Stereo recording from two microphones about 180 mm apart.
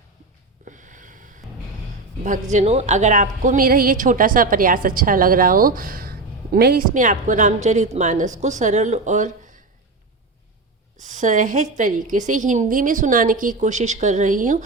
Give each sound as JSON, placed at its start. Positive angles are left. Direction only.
{"t": 0.6, "sound": "a sound", "side_deg": -45}
{"t": 2.2, "sound": "a woman's voice", "side_deg": -45}
{"t": 11.0, "sound": "a woman's voice", "side_deg": -45}